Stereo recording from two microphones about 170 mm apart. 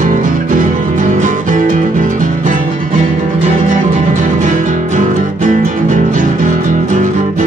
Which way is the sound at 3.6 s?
45° right (ahead or behind).